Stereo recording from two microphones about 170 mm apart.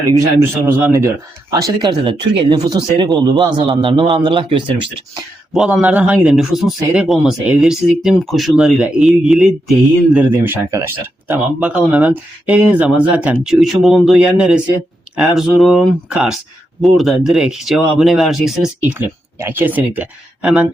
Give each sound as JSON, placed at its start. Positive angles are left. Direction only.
{"t": 0.3, "sound": "speech", "side_deg": -15}
{"t": 5.5, "sound": "speech", "side_deg": -5}